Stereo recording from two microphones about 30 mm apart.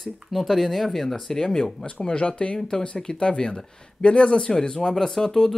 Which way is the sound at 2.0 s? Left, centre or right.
Left.